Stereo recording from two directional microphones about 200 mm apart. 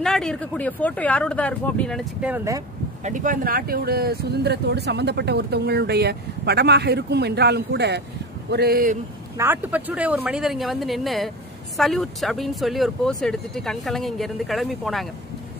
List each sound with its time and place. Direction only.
0.0 s speech: 5° left (ahead or behind)
2.2 s speech: 10° right (ahead or behind)
3.0 s speech: 40° right (ahead or behind)
9.4 s speech: 10° right (ahead or behind)